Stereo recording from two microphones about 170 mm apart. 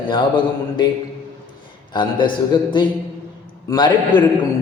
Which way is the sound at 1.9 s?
25° left (ahead or behind).